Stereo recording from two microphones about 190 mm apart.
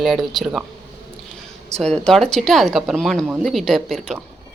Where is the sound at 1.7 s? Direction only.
5° left (ahead or behind).